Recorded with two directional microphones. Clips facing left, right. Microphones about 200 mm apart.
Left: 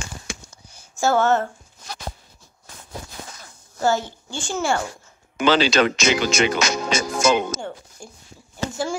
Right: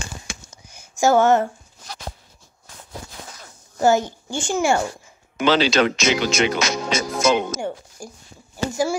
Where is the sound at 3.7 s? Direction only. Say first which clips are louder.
Right 4 dB; 15° right (ahead or behind).